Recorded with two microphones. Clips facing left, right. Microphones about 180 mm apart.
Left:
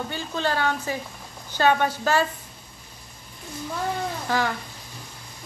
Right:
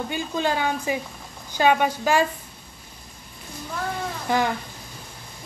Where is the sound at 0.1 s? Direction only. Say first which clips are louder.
Right 3 dB; 15° right (ahead or behind).